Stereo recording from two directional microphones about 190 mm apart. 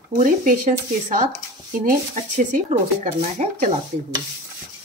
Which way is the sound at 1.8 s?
40° right (ahead or behind).